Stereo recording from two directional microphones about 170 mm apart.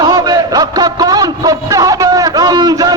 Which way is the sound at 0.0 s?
25° right (ahead or behind).